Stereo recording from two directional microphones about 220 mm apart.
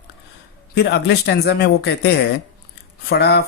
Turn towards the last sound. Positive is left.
turn(degrees=50)  # may be behind; listen again after turning